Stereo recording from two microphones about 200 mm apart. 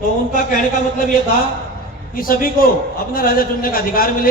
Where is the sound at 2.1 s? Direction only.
45° left (ahead or behind).